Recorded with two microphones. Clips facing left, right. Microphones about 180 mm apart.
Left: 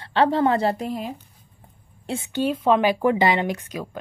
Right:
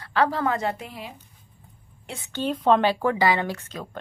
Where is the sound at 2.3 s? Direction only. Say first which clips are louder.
Left 1 dB; 5° left (ahead or behind).